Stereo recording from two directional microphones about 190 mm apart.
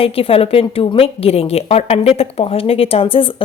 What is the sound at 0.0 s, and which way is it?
A woman's voice, 30° left (ahead or behind).